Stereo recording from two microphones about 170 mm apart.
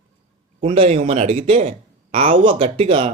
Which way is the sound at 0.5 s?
35° right (ahead or behind).